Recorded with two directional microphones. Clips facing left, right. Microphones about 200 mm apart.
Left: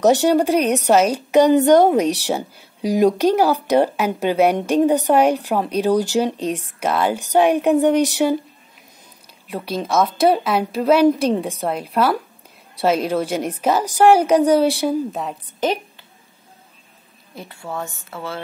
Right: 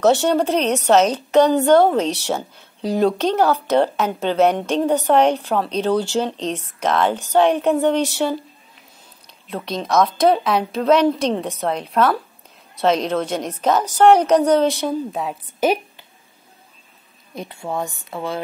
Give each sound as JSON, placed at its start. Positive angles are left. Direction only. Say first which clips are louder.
{"t": 0.0, "sound": "a woman's voice", "louder": "left 1 dB", "side_deg": 10}
{"t": 9.5, "sound": "a woman's voice", "louder": "even", "side_deg": 10}
{"t": 15.1, "sound": "a woman's voice", "louder": "right 2 dB", "side_deg": -5}
{"t": 17.4, "sound": "speech", "louder": "right 3 dB", "side_deg": -20}